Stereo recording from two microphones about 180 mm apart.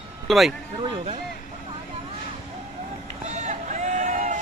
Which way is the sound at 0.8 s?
30° right (ahead or behind).